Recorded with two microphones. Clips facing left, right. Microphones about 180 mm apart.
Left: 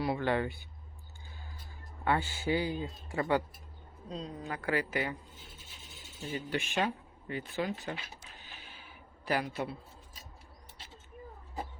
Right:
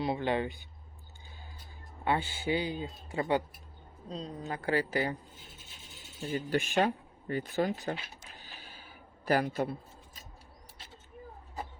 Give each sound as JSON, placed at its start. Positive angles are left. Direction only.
{"t": 0.0, "sound": "speech", "side_deg": -20}
{"t": 2.0, "sound": "speech", "side_deg": -20}
{"t": 6.3, "sound": "speech", "side_deg": -40}
{"t": 8.4, "sound": "a sound", "side_deg": -35}